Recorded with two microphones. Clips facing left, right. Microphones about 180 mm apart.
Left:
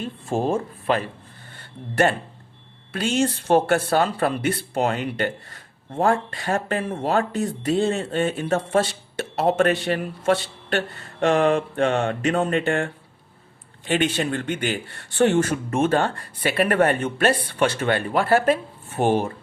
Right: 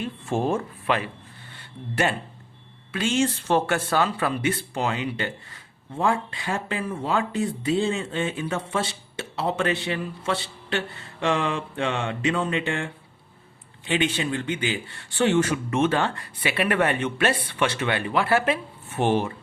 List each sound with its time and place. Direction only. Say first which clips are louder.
0.0 s speech: left 1 dB; 35° left (ahead or behind)
1.5 s speech: left 5 dB; 50° left (ahead or behind)
2.9 s speech: left 1 dB; 40° left (ahead or behind)
3.2 s speech: left 4 dB; 50° left (ahead or behind)